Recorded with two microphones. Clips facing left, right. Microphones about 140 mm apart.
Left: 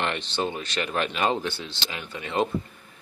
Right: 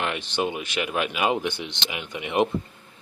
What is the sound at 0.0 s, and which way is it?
Speech, 10° right (ahead or behind).